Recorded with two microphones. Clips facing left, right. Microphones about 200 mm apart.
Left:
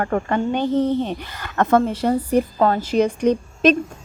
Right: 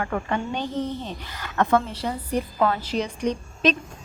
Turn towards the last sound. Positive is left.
turn(degrees=50)  # may be behind; listen again after turning